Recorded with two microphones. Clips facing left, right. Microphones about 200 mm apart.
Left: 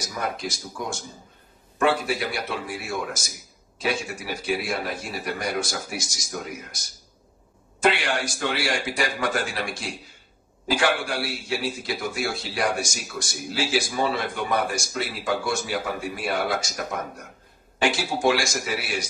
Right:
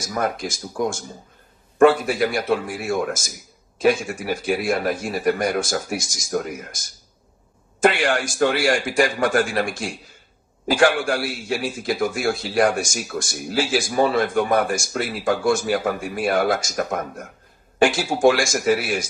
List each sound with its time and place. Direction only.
0.2 s speech: 55° right (ahead or behind)
7.8 s speech: 50° right (ahead or behind)